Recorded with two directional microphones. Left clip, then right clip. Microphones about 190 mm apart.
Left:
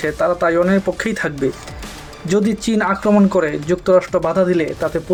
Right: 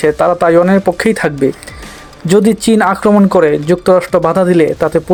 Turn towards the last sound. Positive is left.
turn(degrees=-35)  # may be behind; listen again after turning